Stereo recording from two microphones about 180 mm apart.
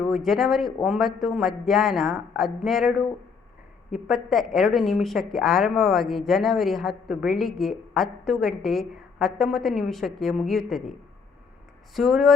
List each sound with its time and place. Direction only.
0.0 s a woman's voice: centre (ahead or behind)
3.9 s a woman's voice: centre (ahead or behind)
11.9 s a woman's voice: centre (ahead or behind)